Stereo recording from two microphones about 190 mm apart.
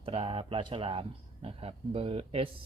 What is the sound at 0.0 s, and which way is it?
Speech, 30° right (ahead or behind).